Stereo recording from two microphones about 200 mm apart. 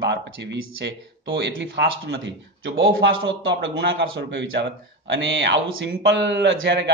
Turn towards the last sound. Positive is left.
turn(degrees=-60)  # may be behind; listen again after turning